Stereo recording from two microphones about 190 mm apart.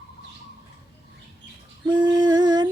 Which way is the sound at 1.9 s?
20° right (ahead or behind).